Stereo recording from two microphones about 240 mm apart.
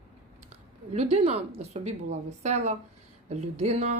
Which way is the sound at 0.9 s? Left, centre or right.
Right.